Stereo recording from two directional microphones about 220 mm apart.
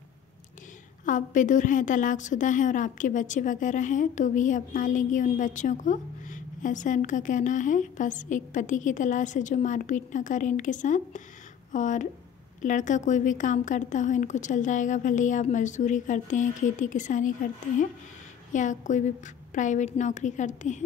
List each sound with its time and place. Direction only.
1.0 s a woman's voice: 35° left (ahead or behind)
18.5 s a woman's voice: 35° left (ahead or behind)